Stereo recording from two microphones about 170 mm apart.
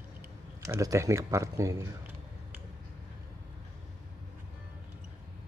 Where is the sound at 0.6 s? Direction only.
20° right (ahead or behind).